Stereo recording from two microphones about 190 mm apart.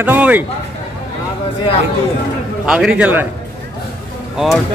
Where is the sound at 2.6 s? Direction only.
5° right (ahead or behind).